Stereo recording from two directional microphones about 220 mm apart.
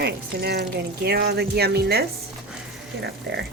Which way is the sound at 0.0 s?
45° right (ahead or behind).